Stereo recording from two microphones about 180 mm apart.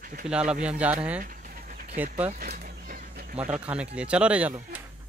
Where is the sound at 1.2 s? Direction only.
50° right (ahead or behind).